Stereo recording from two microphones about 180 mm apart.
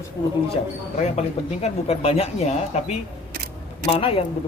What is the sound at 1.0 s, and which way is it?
Speech, 35° left (ahead or behind).